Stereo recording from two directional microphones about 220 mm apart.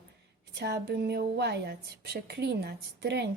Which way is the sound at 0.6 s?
45° right (ahead or behind).